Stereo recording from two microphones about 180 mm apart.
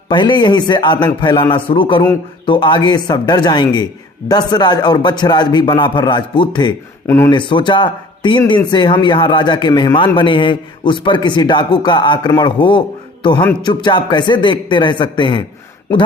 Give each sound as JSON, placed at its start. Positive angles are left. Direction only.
{"t": 0.1, "sound": "speech", "side_deg": 25}